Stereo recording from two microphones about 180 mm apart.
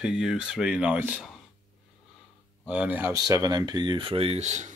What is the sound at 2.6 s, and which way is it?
Speech, 5° right (ahead or behind).